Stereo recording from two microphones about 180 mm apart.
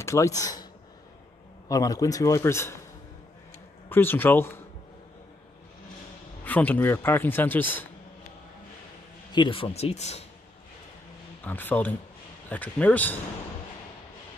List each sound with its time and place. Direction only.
0.0 s speech: 15° left (ahead or behind)
1.7 s a man's voice: 20° left (ahead or behind)
3.9 s speech: 10° left (ahead or behind)
6.4 s a man's voice: 10° left (ahead or behind)
9.3 s speech: 30° left (ahead or behind)
11.4 s a man's voice: 10° left (ahead or behind)